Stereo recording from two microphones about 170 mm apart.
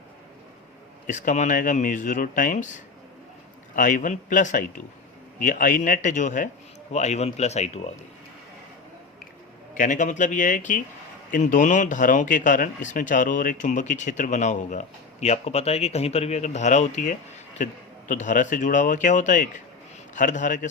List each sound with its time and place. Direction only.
1.0 s speech: 45° left (ahead or behind)
3.8 s speech: 50° left (ahead or behind)
9.7 s speech: 50° left (ahead or behind)